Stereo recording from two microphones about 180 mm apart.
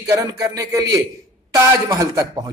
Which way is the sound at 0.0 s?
20° right (ahead or behind).